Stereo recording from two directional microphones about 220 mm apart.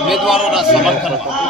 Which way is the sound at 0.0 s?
Centre (ahead or behind).